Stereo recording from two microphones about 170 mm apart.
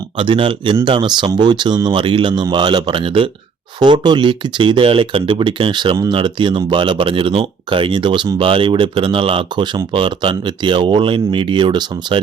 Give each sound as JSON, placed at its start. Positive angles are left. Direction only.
{"t": 0.2, "sound": "speech", "side_deg": -30}